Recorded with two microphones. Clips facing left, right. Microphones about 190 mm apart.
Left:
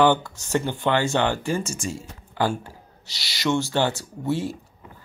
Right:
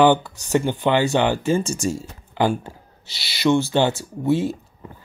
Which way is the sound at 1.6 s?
30° right (ahead or behind).